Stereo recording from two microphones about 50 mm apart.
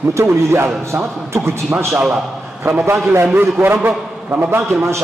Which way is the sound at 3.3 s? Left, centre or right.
Right.